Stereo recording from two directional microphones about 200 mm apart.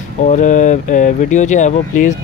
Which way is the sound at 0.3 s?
40° left (ahead or behind).